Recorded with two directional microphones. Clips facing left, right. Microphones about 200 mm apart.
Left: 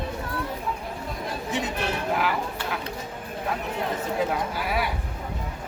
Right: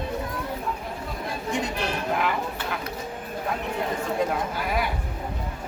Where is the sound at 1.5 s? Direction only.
5° left (ahead or behind).